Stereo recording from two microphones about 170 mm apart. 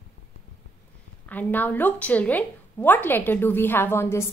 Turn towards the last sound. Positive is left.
turn(degrees=15)  # may be behind; listen again after turning